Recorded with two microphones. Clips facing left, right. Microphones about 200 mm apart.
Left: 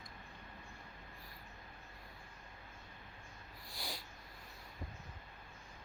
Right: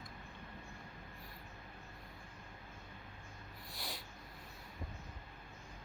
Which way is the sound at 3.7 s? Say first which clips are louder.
Left 1 dB; centre (ahead or behind).